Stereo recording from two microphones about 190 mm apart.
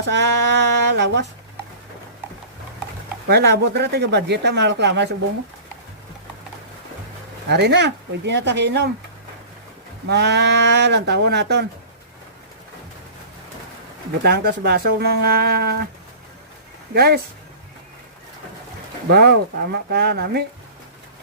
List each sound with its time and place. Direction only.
0.1 s a sound: 70° right (ahead or behind)
3.2 s speech: 60° right (ahead or behind)
7.4 s speech: 60° right (ahead or behind)
10.1 s speech: 65° right (ahead or behind)
14.2 s speech: 60° right (ahead or behind)
16.9 s speech: 55° right (ahead or behind)
19.1 s speech: 55° right (ahead or behind)